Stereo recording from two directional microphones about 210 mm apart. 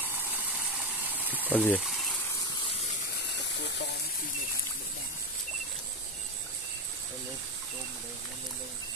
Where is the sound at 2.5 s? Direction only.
30° left (ahead or behind).